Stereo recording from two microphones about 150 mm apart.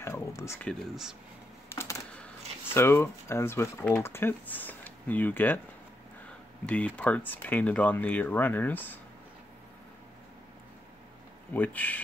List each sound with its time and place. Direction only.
0.0 s speech: 20° left (ahead or behind)
0.6 s speech: centre (ahead or behind)
1.7 s typing: 15° left (ahead or behind)
2.7 s speech: 15° left (ahead or behind)
6.6 s speech: 10° left (ahead or behind)
11.5 s speech: 10° left (ahead or behind)